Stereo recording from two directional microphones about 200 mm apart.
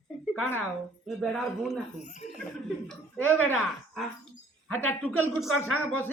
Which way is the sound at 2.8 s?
5° left (ahead or behind).